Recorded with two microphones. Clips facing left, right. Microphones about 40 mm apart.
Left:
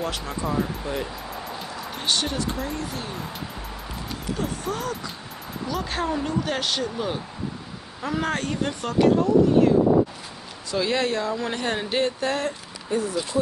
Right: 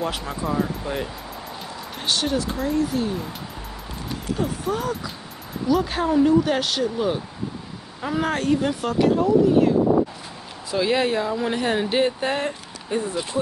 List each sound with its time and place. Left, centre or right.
0.0 s speech: centre
2.0 s speech: centre
4.4 s speech: centre
10.7 s speech: centre